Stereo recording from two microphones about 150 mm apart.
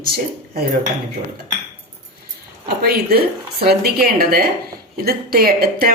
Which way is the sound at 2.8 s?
90° right.